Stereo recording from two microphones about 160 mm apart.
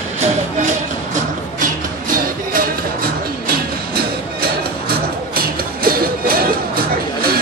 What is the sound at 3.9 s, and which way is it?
Music, 70° right (ahead or behind).